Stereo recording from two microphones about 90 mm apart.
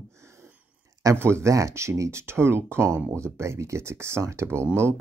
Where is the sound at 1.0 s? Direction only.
30° right (ahead or behind).